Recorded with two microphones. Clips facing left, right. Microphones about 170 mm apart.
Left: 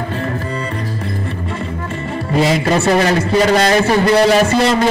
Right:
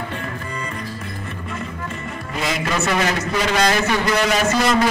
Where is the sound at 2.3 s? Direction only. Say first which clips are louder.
Left 9 dB; 30° left (ahead or behind).